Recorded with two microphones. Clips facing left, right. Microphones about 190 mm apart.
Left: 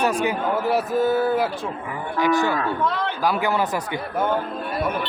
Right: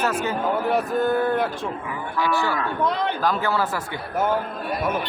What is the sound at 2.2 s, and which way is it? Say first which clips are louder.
Speech: left 4 dB; 20° left (ahead or behind).